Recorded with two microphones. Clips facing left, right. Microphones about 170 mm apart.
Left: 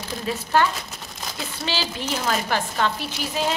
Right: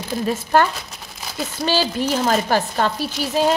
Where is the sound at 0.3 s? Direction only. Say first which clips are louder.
Right 3 dB; 50° right (ahead or behind).